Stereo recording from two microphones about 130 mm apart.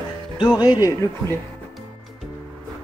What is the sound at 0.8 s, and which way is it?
Speech, 25° left (ahead or behind).